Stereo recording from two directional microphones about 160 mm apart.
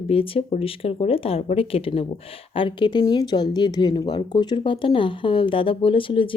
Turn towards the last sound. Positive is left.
turn(degrees=35)  # may be behind; listen again after turning